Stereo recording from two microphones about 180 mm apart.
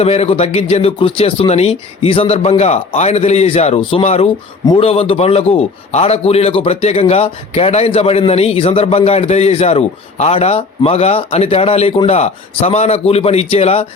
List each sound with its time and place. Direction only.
0.0 s a man's voice: 35° left (ahead or behind)